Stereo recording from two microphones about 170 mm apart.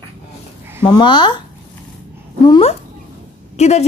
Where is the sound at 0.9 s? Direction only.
25° left (ahead or behind).